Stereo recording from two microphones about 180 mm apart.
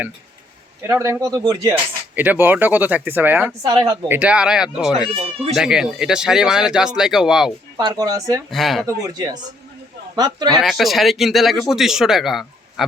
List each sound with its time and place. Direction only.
0.9 s speech: 15° right (ahead or behind)
4.2 s speech: 5° right (ahead or behind)
5.1 s speech: 30° right (ahead or behind)
5.5 s speech: 5° right (ahead or behind)
7.8 s speech: 20° right (ahead or behind)
8.4 s speech: centre (ahead or behind)
9.0 s speech: 20° right (ahead or behind)
10.6 s speech: centre (ahead or behind)